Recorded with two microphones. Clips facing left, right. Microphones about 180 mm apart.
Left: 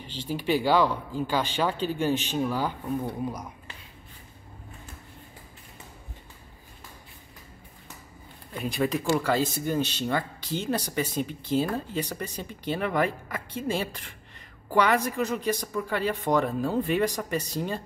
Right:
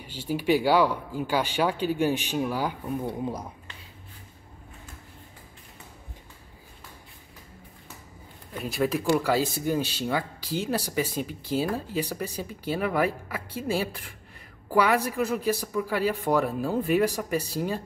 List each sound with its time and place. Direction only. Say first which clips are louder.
0.0 s speech: right 3 dB; 10° right (ahead or behind)
3.3 s speech: right 2 dB; 30° right (ahead or behind)
8.5 s speech: even; 5° right (ahead or behind)